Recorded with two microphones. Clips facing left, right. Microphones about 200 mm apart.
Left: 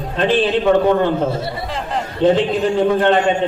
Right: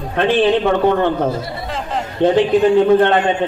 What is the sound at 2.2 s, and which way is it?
Speech, 60° right (ahead or behind).